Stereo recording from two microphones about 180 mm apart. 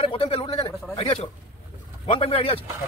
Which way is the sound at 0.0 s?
30° left (ahead or behind).